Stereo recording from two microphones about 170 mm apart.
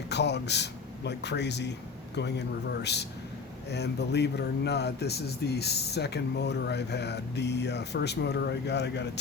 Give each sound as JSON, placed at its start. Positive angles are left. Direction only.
{"t": 0.1, "sound": "speech", "side_deg": 90}